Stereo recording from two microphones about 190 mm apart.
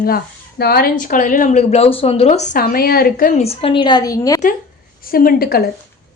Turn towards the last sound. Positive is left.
turn(degrees=50)  # may be behind; listen again after turning